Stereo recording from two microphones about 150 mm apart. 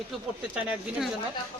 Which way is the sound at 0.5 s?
Centre (ahead or behind).